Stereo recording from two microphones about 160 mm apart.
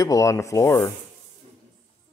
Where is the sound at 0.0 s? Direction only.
20° left (ahead or behind).